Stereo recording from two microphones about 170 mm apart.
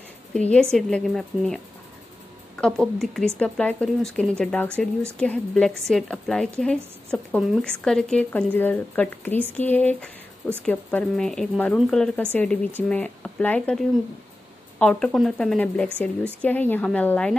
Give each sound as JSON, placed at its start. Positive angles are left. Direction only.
{"t": 0.3, "sound": "a woman's voice", "side_deg": 5}
{"t": 2.6, "sound": "a woman's voice", "side_deg": 5}